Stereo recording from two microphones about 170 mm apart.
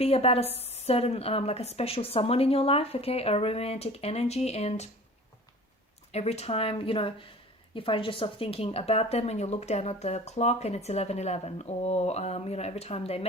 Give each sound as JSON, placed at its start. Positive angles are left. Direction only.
{"t": 0.0, "sound": "a woman's voice", "side_deg": 35}
{"t": 6.1, "sound": "a woman's voice", "side_deg": 40}